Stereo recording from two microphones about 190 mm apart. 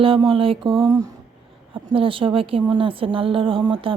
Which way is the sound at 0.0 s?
25° right (ahead or behind).